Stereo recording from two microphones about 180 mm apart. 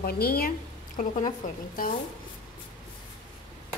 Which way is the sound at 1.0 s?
45° left (ahead or behind).